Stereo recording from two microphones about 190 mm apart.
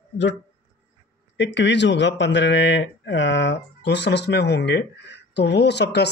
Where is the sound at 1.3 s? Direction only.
70° left (ahead or behind).